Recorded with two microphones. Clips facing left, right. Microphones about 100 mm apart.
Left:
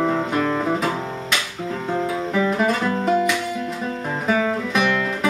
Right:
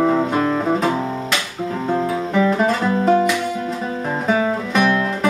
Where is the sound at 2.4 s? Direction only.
Centre (ahead or behind).